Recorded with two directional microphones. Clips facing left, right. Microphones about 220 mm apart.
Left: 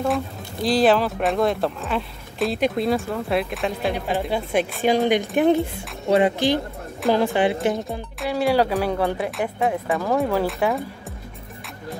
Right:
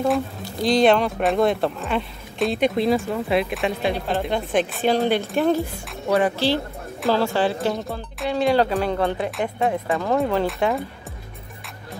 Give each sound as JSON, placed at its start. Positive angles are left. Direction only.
{"t": 0.0, "sound": "speech", "side_deg": 0}
{"t": 3.9, "sound": "speech", "side_deg": 15}
{"t": 8.2, "sound": "speech", "side_deg": 5}